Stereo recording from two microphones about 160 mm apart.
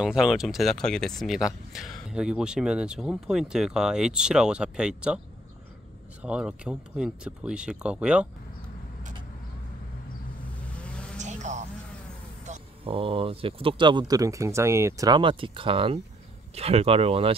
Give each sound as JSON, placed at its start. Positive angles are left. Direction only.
{"t": 0.0, "sound": "speech", "side_deg": -5}
{"t": 6.2, "sound": "speech", "side_deg": -5}
{"t": 10.7, "sound": "vehicle", "side_deg": 5}
{"t": 11.1, "sound": "music", "side_deg": -50}
{"t": 12.4, "sound": "speech", "side_deg": -35}